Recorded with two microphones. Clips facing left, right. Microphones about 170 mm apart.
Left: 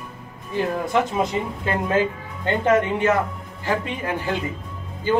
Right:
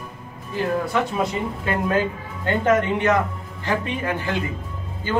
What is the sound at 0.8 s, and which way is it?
Speech, 20° left (ahead or behind).